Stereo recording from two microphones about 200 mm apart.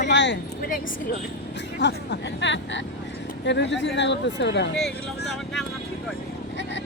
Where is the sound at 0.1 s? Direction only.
60° left (ahead or behind).